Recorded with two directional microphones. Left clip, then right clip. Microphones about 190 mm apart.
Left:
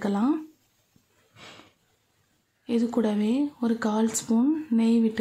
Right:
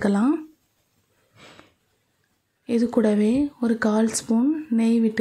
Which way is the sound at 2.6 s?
20° right (ahead or behind).